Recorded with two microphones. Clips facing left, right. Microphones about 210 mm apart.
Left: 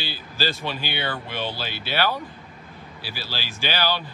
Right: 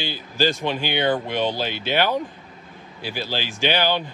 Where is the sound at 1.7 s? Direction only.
15° right (ahead or behind).